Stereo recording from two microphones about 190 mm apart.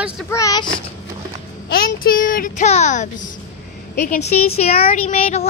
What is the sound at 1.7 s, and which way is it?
A child's voice, 50° left (ahead or behind).